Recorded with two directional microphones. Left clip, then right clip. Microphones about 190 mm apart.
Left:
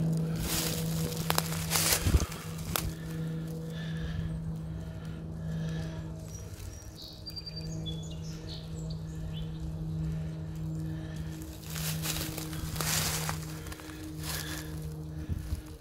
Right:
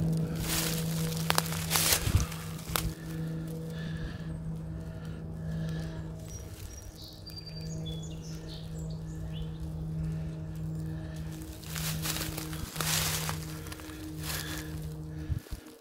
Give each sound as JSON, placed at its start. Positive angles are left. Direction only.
{"t": 0.3, "sound": "music", "side_deg": -10}
{"t": 2.7, "sound": "music", "side_deg": -10}
{"t": 3.7, "sound": "music", "side_deg": 5}
{"t": 5.6, "sound": "music", "side_deg": 10}
{"t": 11.7, "sound": "a sound", "side_deg": -5}